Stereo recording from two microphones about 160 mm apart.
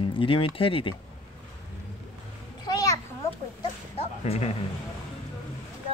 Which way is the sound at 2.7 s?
25° left (ahead or behind).